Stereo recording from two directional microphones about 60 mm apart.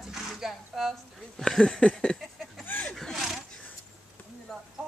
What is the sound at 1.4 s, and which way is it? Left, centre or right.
Speech, centre.